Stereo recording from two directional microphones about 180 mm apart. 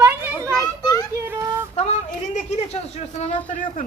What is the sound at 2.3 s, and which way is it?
Speech, 35° left (ahead or behind).